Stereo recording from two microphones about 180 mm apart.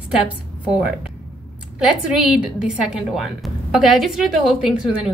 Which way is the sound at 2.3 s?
5° right (ahead or behind).